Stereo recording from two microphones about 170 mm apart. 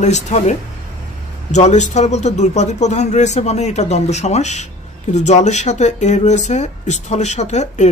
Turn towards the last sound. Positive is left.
turn(degrees=45)  # may be behind; listen again after turning